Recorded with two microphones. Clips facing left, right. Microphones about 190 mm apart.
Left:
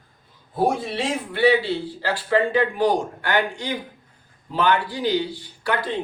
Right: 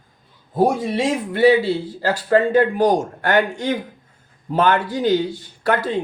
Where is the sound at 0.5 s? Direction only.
45° right (ahead or behind).